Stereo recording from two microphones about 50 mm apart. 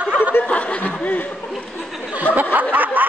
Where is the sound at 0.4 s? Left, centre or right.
Left.